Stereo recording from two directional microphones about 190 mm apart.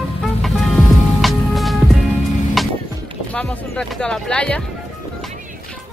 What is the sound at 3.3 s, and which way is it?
Speech, 5° left (ahead or behind).